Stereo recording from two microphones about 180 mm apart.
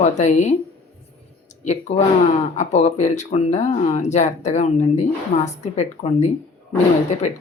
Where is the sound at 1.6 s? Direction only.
40° left (ahead or behind).